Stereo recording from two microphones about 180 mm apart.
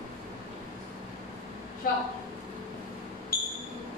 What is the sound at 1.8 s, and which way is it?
Speech, 50° left (ahead or behind).